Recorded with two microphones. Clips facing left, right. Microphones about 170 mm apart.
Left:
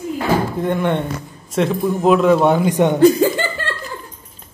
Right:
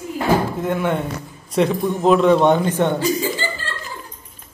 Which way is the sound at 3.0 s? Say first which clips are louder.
Left 9 dB; 55° left (ahead or behind).